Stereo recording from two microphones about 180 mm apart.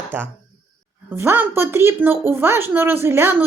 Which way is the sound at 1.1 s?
10° right (ahead or behind).